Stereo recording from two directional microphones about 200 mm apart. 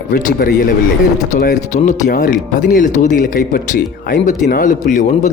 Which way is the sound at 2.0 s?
40° left (ahead or behind).